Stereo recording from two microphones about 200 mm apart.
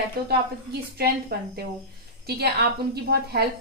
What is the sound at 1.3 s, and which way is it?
A woman's voice, 50° right (ahead or behind).